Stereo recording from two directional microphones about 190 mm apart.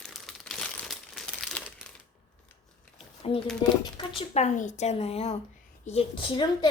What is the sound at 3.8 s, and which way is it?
A woman's voice, 25° left (ahead or behind).